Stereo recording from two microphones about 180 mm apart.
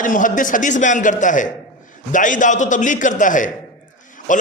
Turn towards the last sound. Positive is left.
turn(degrees=45)  # may be behind; listen again after turning